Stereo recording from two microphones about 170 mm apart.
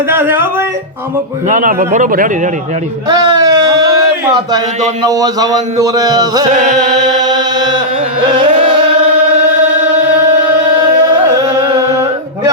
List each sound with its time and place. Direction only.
0.1 s speech: 10° right (ahead or behind)
1.5 s a man's voice: 45° right (ahead or behind)
3.1 s a sound: 25° right (ahead or behind)
5.0 s speech: 20° right (ahead or behind)
6.5 s a man's voice: 45° right (ahead or behind)
8.2 s carnatic music: 30° right (ahead or behind)